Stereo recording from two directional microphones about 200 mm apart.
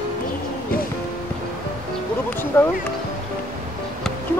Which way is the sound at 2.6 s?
10° left (ahead or behind).